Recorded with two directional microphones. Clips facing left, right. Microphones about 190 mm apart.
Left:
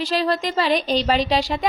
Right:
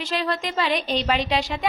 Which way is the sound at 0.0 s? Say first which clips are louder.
Left 4 dB; 35° left (ahead or behind).